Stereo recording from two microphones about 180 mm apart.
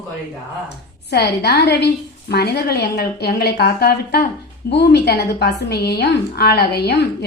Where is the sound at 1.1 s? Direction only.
65° left (ahead or behind).